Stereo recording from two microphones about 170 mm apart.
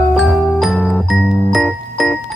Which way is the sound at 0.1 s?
Centre (ahead or behind).